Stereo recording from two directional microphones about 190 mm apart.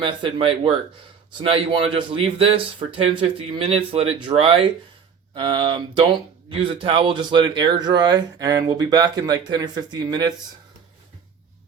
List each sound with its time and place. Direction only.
0.0 s speech: 25° right (ahead or behind)